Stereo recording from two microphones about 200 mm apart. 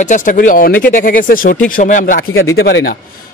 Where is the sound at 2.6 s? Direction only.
55° left (ahead or behind).